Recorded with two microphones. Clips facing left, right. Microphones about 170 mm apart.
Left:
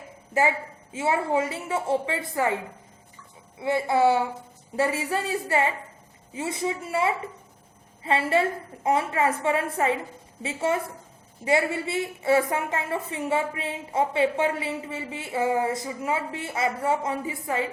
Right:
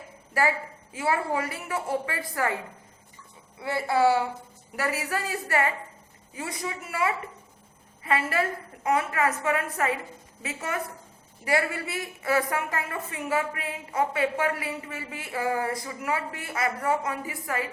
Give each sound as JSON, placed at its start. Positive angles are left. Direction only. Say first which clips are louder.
{"t": 0.4, "sound": "a woman's voice", "louder": "left 2 dB", "side_deg": 20}
{"t": 3.6, "sound": "a woman's voice", "louder": "left 2 dB", "side_deg": 20}